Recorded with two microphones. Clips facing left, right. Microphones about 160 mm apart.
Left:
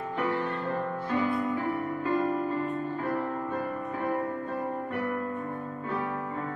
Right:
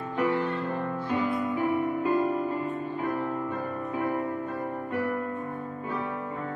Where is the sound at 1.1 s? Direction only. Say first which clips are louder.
Even; 20° right (ahead or behind).